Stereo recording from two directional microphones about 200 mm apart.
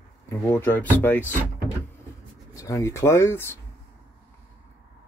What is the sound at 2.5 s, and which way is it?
Speech, 15° left (ahead or behind).